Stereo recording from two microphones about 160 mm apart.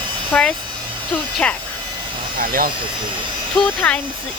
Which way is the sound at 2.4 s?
60° right (ahead or behind).